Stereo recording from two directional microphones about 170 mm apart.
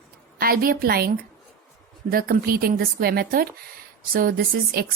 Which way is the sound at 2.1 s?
60° right (ahead or behind).